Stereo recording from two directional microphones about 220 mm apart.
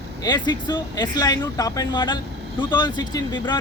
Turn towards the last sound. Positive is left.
turn(degrees=20)  # may be behind; listen again after turning